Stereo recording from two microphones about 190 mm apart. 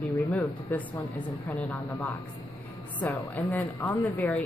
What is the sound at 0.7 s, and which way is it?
Speech, 10° left (ahead or behind).